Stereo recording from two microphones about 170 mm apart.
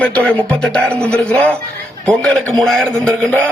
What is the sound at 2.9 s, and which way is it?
Music, 15° right (ahead or behind).